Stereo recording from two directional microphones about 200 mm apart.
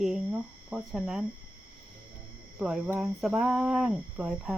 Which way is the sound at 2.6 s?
5° right (ahead or behind).